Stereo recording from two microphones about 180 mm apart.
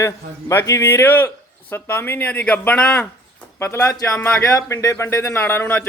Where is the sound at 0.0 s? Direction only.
15° left (ahead or behind).